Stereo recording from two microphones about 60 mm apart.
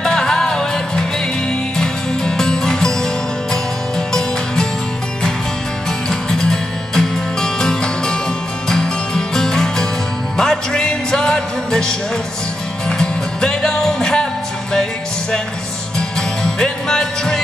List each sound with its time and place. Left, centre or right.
0.0 s music: centre
6.0 s music: centre
16.2 s music: centre